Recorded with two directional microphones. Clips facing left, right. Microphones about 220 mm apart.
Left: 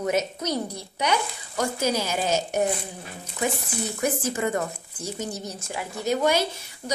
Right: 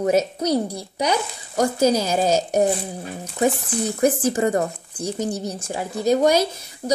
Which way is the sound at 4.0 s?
35° right (ahead or behind).